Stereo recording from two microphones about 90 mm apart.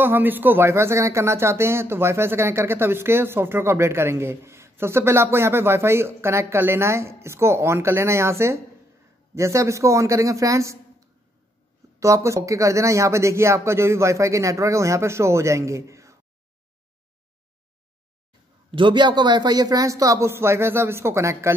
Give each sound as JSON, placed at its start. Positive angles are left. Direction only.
{"t": 0.0, "sound": "speech", "side_deg": -25}
{"t": 12.0, "sound": "speech", "side_deg": -35}
{"t": 18.7, "sound": "speech", "side_deg": -65}